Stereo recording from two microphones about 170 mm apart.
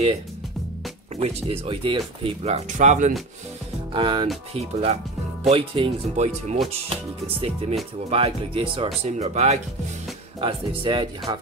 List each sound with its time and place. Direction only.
1.1 s speech: 35° right (ahead or behind)
3.9 s speech: 30° right (ahead or behind)